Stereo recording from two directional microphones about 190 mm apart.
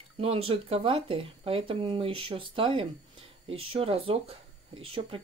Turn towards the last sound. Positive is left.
turn(degrees=-25)  # may be behind; listen again after turning